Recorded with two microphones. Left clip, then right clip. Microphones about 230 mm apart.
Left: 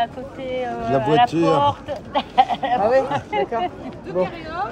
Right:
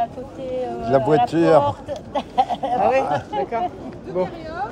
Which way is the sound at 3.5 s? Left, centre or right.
Left.